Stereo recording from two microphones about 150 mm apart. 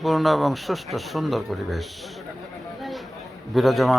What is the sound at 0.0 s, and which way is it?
Speech, centre (ahead or behind).